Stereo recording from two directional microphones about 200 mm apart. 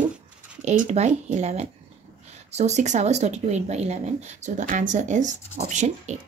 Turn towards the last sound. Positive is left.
turn(degrees=-35)  # may be behind; listen again after turning